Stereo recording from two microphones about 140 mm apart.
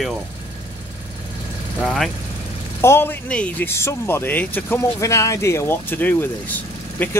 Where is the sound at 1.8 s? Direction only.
5° left (ahead or behind).